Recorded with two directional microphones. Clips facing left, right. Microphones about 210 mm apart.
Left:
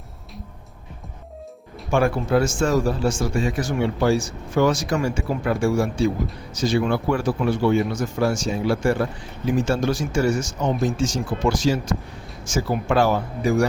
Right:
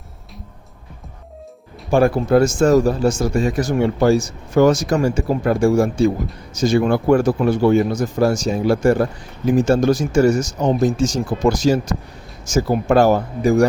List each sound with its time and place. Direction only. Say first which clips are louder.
1.9 s speech: right 5 dB; 35° right (ahead or behind)